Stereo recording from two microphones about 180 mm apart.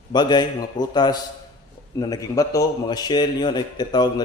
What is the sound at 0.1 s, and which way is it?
A man's voice, 25° left (ahead or behind).